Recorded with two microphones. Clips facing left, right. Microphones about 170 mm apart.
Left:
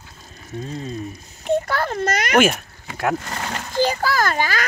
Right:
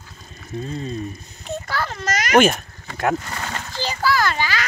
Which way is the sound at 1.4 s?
55° left (ahead or behind).